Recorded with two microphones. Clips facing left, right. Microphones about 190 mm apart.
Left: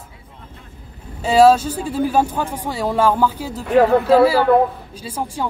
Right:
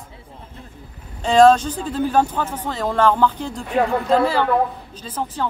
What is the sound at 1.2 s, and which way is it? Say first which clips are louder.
Speech: left 1 dB; 5° left (ahead or behind).